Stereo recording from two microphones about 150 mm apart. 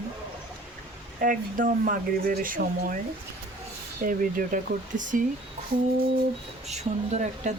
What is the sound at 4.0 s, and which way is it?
Speech, 65° right (ahead or behind).